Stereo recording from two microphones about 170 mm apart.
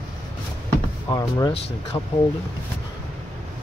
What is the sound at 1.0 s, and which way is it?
Speech, 25° left (ahead or behind).